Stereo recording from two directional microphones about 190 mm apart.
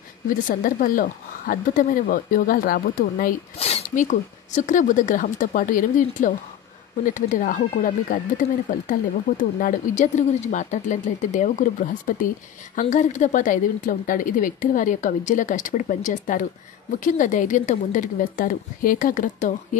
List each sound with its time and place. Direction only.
0.5 s a woman's voice: 45° left (ahead or behind)
3.5 s a woman's voice: 30° left (ahead or behind)